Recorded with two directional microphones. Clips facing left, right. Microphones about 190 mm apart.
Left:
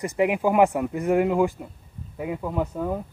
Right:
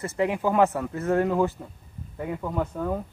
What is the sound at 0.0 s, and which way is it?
Speech, 15° left (ahead or behind).